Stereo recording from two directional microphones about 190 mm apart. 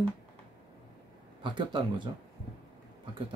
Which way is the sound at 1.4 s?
25° right (ahead or behind).